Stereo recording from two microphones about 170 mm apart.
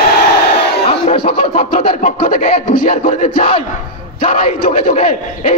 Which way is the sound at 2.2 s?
50° left (ahead or behind).